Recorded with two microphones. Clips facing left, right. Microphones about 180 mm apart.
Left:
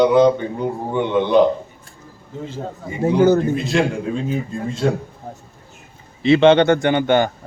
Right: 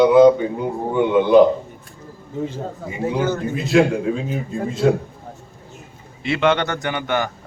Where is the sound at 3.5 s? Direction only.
Centre (ahead or behind).